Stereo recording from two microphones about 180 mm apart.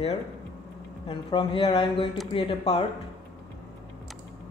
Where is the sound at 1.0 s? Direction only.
30° left (ahead or behind).